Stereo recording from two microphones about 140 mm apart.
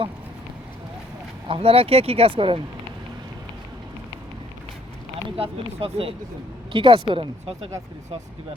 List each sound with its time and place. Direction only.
1.5 s speech: 45° right (ahead or behind)
5.4 s speech: 40° right (ahead or behind)